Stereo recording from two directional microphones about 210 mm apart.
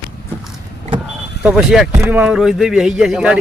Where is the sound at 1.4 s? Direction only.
5° right (ahead or behind).